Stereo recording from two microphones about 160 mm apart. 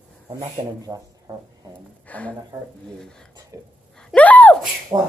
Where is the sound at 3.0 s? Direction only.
5° left (ahead or behind).